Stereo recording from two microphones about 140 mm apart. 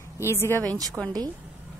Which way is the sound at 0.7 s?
25° right (ahead or behind).